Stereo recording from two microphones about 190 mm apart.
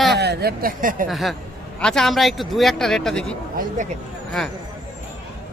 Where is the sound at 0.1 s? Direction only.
60° right (ahead or behind).